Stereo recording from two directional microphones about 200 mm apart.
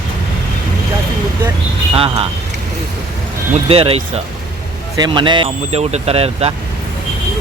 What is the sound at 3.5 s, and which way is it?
Speech, 30° right (ahead or behind).